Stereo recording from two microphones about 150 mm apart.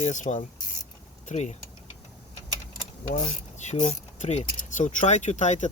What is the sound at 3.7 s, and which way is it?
Speech, 50° left (ahead or behind).